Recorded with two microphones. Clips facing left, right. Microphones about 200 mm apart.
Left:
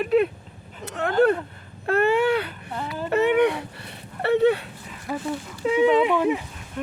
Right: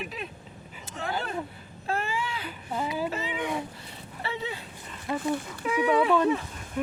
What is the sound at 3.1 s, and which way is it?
Speech, 65° left (ahead or behind).